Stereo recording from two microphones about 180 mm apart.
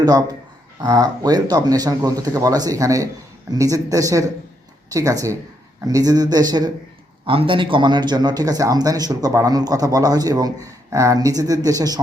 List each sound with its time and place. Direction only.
0.0 s a man's voice: 20° right (ahead or behind)